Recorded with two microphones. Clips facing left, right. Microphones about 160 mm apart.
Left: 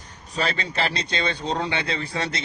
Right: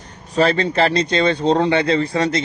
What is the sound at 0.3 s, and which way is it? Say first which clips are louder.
Speech: right 10 dB; 45° right (ahead or behind).